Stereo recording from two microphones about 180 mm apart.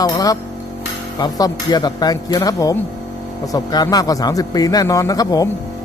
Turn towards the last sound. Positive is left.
turn(degrees=20)  # may be behind; listen again after turning